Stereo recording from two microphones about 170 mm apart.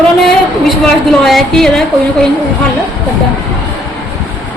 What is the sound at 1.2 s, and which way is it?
Speech, centre (ahead or behind).